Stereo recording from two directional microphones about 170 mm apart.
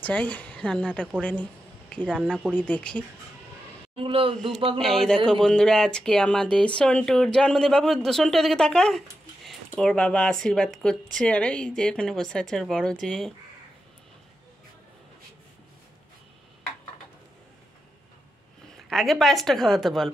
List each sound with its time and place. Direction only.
0.0 s a woman's voice: 10° left (ahead or behind)
3.9 s speech: 30° right (ahead or behind)
4.7 s speech: centre (ahead or behind)
18.9 s speech: centre (ahead or behind)